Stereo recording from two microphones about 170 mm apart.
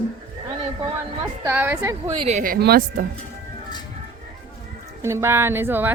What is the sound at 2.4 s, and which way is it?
Speech, 65° right (ahead or behind).